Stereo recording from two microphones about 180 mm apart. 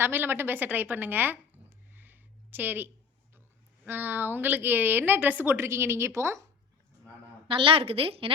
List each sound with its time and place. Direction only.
0.0 s a woman's voice: 10° right (ahead or behind)
1.9 s a sound: 10° right (ahead or behind)
3.8 s a woman's voice: 10° right (ahead or behind)
7.4 s a woman's voice: 30° right (ahead or behind)